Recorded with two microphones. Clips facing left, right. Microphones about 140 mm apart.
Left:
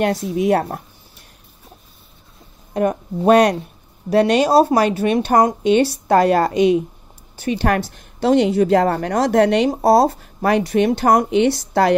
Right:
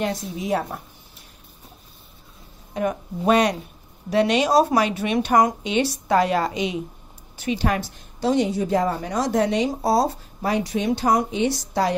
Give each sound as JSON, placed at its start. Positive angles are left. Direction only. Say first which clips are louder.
{"t": 0.0, "sound": "speech", "louder": "left 8 dB", "side_deg": 60}
{"t": 2.7, "sound": "a woman's voice", "louder": "left 6 dB", "side_deg": 45}
{"t": 9.8, "sound": "speech", "louder": "left 7 dB", "side_deg": 55}